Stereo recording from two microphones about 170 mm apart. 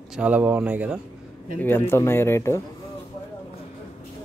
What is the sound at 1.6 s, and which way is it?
Speech, 15° left (ahead or behind).